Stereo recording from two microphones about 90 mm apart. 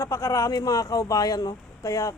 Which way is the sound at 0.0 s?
35° left (ahead or behind).